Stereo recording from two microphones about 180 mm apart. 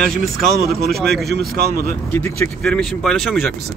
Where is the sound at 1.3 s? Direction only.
55° right (ahead or behind).